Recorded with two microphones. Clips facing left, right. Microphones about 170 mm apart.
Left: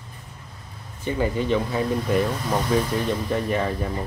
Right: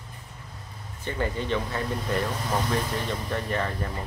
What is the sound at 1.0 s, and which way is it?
Speech, 10° left (ahead or behind).